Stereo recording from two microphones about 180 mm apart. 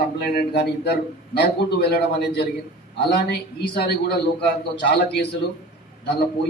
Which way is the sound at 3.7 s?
60° left (ahead or behind).